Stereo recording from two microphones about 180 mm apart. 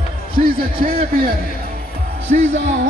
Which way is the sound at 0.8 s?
55° right (ahead or behind).